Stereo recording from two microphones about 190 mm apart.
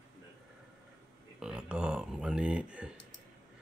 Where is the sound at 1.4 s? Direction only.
5° right (ahead or behind).